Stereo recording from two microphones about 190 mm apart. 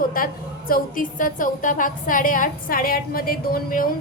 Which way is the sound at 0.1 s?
50° left (ahead or behind).